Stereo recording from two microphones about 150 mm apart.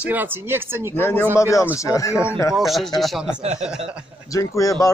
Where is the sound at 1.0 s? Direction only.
15° left (ahead or behind).